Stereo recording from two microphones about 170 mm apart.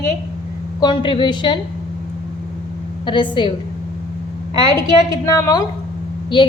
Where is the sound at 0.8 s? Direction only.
25° left (ahead or behind).